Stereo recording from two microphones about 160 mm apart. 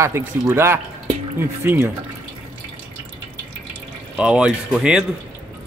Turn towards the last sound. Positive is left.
turn(degrees=-5)  # may be behind; listen again after turning